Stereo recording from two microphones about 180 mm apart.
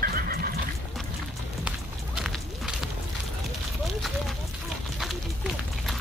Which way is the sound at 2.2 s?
5° right (ahead or behind).